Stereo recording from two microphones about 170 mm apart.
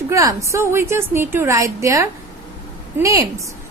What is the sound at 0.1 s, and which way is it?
A woman's voice, 20° right (ahead or behind).